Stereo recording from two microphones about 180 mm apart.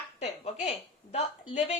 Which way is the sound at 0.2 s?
40° left (ahead or behind).